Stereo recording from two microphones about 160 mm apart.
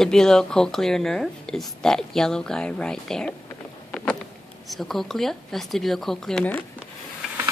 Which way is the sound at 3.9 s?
5° left (ahead or behind).